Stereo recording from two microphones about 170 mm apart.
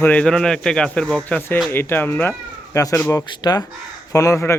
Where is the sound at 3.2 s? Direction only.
25° left (ahead or behind).